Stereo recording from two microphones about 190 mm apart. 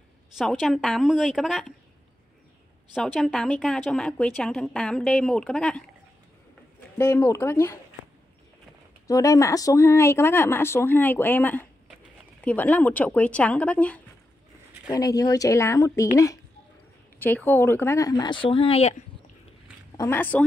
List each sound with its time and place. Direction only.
0.4 s speech: centre (ahead or behind)
2.9 s speech: centre (ahead or behind)
7.0 s speech: 15° left (ahead or behind)
9.0 s speech: 15° left (ahead or behind)
14.9 s speech: 20° left (ahead or behind)
17.2 s speech: 10° left (ahead or behind); by 18.9 s 35° left (ahead or behind)
20.0 s speech: 10° left (ahead or behind)